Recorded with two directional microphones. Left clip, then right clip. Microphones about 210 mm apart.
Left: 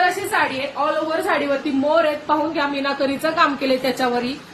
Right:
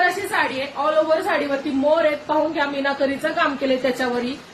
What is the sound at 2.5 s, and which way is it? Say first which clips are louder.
A woman's voice: even; 15° left (ahead or behind).